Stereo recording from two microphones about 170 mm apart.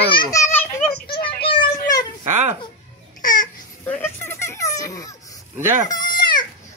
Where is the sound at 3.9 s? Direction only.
15° left (ahead or behind).